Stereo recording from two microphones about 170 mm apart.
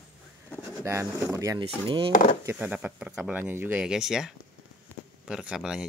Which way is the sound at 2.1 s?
50° left (ahead or behind).